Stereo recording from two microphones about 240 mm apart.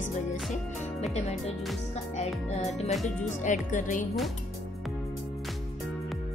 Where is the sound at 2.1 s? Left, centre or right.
Left.